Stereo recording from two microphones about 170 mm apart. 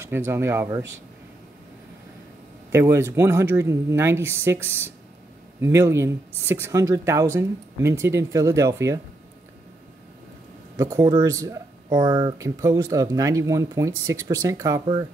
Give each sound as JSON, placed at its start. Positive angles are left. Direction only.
{"t": 0.1, "sound": "speech", "side_deg": -15}
{"t": 2.7, "sound": "speech", "side_deg": -15}
{"t": 10.8, "sound": "speech", "side_deg": -20}